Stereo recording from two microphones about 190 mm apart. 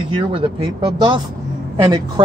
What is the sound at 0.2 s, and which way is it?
Speech, 25° right (ahead or behind).